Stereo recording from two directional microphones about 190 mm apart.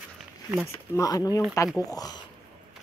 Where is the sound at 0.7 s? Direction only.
15° left (ahead or behind).